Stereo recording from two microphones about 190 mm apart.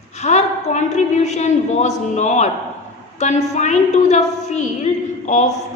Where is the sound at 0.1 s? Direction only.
35° left (ahead or behind).